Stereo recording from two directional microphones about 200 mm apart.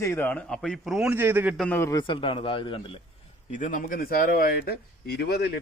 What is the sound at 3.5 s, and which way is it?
Speech, 40° left (ahead or behind).